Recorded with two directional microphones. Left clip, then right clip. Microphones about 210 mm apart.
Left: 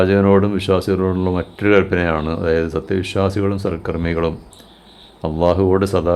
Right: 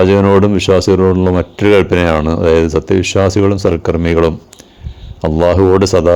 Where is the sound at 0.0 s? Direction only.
30° right (ahead or behind).